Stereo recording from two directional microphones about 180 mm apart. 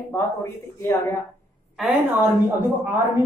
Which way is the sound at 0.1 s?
15° left (ahead or behind).